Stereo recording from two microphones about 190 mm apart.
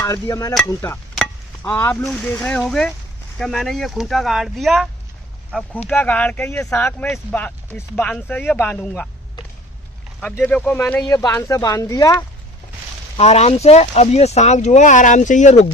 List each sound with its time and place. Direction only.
0.0 s speech: 15° left (ahead or behind)
1.1 s chop: centre (ahead or behind)
1.7 s speech: 10° left (ahead or behind)
10.2 s speech: 5° left (ahead or behind)
13.1 s speech: 35° left (ahead or behind)